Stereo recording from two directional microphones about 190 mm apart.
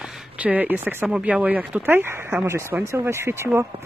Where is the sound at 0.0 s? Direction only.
5° right (ahead or behind).